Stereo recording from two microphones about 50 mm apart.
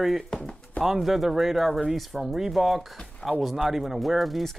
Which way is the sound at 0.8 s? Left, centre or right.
Centre.